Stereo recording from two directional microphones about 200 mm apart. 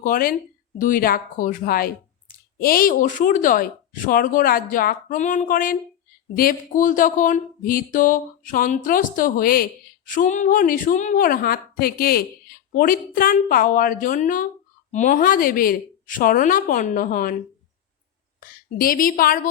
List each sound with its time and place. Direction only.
0.0 s speech: 45° left (ahead or behind)
18.3 s a woman's voice: 45° left (ahead or behind)